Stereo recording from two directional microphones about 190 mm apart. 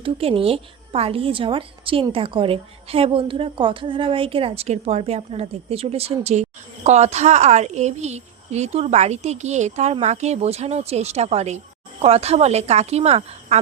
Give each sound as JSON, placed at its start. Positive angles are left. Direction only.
{"t": 0.0, "sound": "a woman's voice", "side_deg": -30}